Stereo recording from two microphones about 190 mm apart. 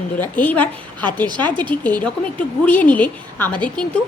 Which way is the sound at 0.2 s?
10° left (ahead or behind).